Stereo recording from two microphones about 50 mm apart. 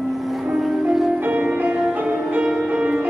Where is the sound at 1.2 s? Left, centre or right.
Right.